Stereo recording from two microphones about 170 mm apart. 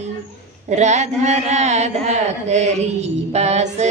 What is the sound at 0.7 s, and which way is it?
Speech, 45° right (ahead or behind).